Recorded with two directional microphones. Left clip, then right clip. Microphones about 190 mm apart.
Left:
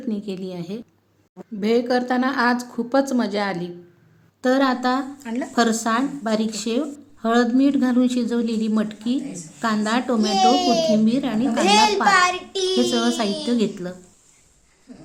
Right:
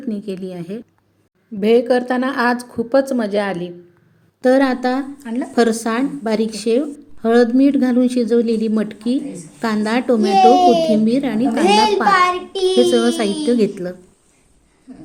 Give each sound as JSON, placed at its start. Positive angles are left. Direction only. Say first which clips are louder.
{"t": 0.0, "sound": "speech", "louder": "right 3 dB", "side_deg": -10}
{"t": 5.2, "sound": "speech", "louder": "right 3 dB", "side_deg": 0}
{"t": 5.5, "sound": "speech", "louder": "right 3 dB", "side_deg": -15}
{"t": 11.0, "sound": "speech", "louder": "right 4 dB", "side_deg": -15}